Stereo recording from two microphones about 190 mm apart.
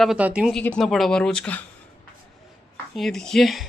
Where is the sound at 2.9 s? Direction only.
Centre (ahead or behind).